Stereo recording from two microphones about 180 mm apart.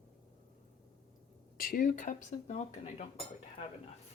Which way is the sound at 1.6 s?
50° left (ahead or behind).